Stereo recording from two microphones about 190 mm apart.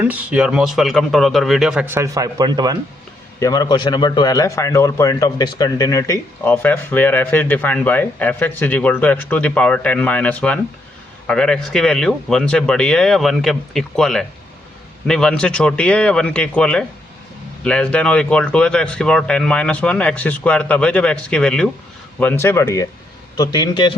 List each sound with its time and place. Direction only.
0.0 s speech: 10° right (ahead or behind)
3.4 s a man's voice: 20° left (ahead or behind)